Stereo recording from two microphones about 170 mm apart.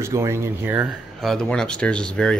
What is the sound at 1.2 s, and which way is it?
Speech, centre (ahead or behind).